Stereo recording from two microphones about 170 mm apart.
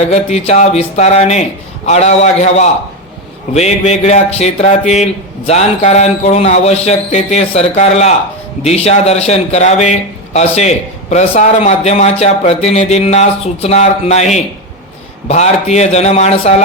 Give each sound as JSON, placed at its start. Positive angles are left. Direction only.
{"t": 0.0, "sound": "a man's voice", "side_deg": 40}